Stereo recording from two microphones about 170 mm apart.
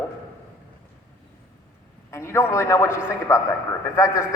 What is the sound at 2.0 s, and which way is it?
A man's voice, 15° left (ahead or behind).